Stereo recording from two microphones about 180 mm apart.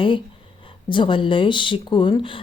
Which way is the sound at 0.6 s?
30° left (ahead or behind).